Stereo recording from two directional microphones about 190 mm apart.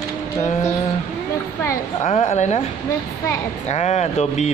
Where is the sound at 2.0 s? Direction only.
35° left (ahead or behind).